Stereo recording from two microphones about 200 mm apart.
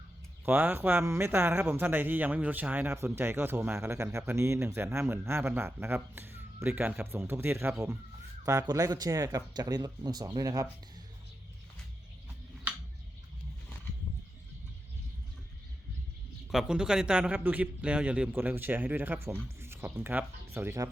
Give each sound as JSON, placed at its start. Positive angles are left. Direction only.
{"t": 0.4, "sound": "a man's voice", "side_deg": -10}
{"t": 16.5, "sound": "a man's voice", "side_deg": -5}